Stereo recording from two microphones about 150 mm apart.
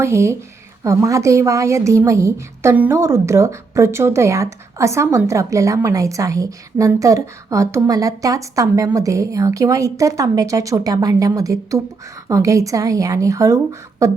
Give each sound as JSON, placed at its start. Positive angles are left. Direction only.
{"t": 0.0, "sound": "a woman's voice", "side_deg": -20}